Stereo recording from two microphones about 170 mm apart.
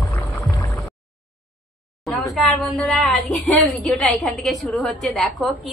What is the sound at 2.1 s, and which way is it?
Speech, centre (ahead or behind).